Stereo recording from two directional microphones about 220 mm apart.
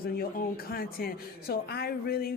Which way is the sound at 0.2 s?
40° left (ahead or behind).